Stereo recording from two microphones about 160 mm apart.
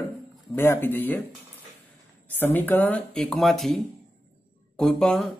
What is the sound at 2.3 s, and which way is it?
Speech, 10° left (ahead or behind).